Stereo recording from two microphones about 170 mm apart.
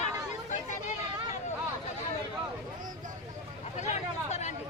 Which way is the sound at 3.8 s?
40° left (ahead or behind).